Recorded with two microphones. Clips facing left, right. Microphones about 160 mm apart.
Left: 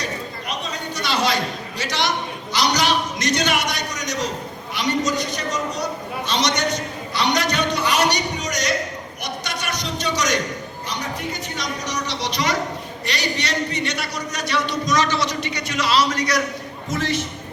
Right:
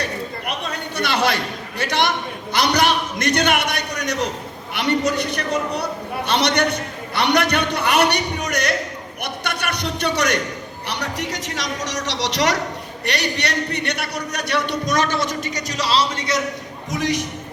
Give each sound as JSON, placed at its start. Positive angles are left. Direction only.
{"t": 0.0, "sound": "a sound", "side_deg": -60}
{"t": 1.8, "sound": "a man's voice", "side_deg": -55}
{"t": 9.2, "sound": "a sound", "side_deg": -60}
{"t": 10.8, "sound": "a man's voice", "side_deg": -75}
{"t": 13.1, "sound": "a man's voice", "side_deg": -60}
{"t": 16.9, "sound": "a man's voice", "side_deg": -15}